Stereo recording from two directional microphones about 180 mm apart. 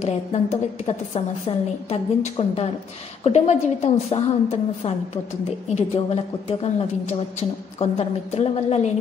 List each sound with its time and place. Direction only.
0.0 s a woman's voice: 40° left (ahead or behind)